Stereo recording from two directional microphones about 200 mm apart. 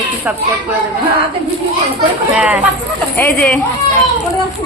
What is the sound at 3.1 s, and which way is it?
Speech, 5° left (ahead or behind).